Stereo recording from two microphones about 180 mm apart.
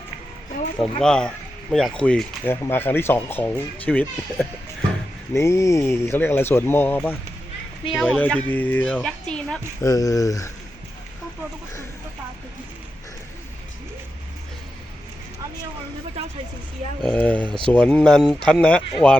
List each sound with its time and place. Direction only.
1.0 s speech: 5° left (ahead or behind)
9.8 s speech: 20° left (ahead or behind)
17.0 s speech: 5° left (ahead or behind)